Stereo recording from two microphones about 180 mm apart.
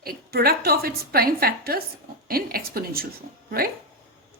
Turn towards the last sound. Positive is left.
turn(degrees=-55)  # may be behind; listen again after turning